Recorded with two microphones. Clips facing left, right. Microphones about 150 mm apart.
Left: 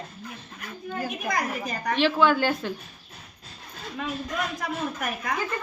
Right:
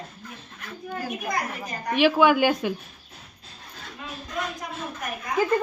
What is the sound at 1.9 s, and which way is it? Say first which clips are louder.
Speech: right 3 dB; 10° right (ahead or behind).